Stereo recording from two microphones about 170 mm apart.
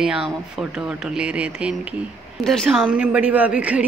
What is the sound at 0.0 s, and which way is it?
A woman's voice, 5° right (ahead or behind).